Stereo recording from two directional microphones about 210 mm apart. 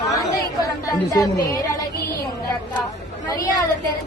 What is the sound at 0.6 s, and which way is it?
A woman's voice, 15° left (ahead or behind).